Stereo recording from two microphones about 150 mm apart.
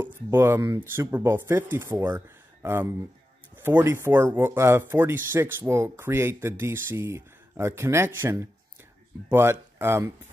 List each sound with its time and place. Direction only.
0.3 s speech: 15° right (ahead or behind)